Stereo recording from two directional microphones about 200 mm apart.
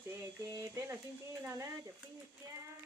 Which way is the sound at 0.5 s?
15° right (ahead or behind).